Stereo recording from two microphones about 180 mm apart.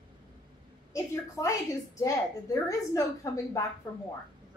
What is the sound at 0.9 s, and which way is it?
A woman's voice, 15° left (ahead or behind).